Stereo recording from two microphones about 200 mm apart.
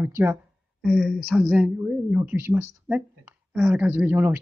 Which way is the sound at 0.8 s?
Centre (ahead or behind).